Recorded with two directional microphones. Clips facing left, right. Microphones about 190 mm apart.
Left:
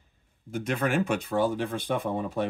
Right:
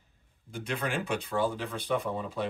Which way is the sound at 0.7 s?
45° left (ahead or behind).